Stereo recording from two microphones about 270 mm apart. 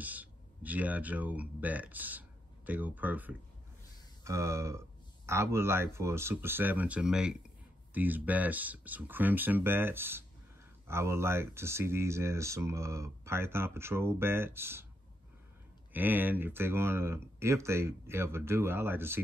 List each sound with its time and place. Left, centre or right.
0.0 s speech: centre
15.9 s speech: centre